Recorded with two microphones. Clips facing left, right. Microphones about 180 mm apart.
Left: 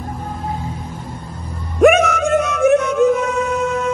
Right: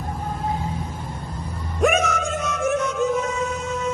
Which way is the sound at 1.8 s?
60° left (ahead or behind).